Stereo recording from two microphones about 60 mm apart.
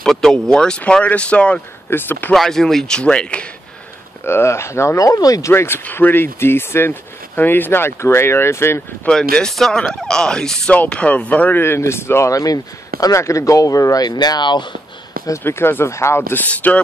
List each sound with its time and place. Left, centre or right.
0.0 s speech: centre
1.9 s speech: left
2.3 s speech: centre
4.2 s speech: left
5.5 s speech: left
9.1 s speech: centre; by 11.6 s left
11.6 s speech: left
12.3 s speech: left
13.0 s speech: left
15.4 s speech: left
16.5 s speech: left